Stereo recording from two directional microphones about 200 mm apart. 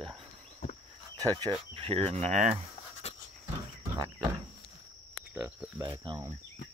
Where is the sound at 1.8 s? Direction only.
30° right (ahead or behind).